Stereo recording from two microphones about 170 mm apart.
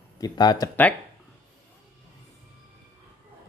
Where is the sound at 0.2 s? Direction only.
25° left (ahead or behind).